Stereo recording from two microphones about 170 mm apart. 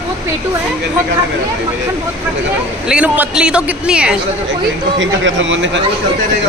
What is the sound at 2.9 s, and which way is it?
A woman's voice, 5° right (ahead or behind).